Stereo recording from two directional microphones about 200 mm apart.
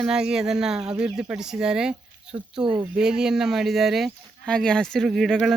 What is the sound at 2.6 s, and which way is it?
Speech, 25° right (ahead or behind).